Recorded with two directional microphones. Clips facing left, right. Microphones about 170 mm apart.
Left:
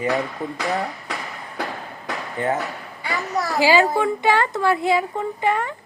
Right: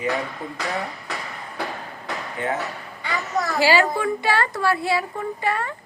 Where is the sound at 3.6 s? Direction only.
20° left (ahead or behind).